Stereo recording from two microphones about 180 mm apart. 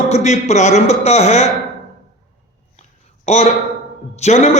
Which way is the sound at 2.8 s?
40° left (ahead or behind).